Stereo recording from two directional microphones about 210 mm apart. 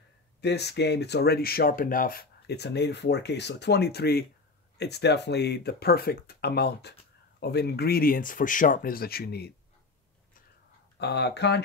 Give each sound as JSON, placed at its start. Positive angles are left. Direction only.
{"t": 0.4, "sound": "speech", "side_deg": 50}
{"t": 11.0, "sound": "speech", "side_deg": 55}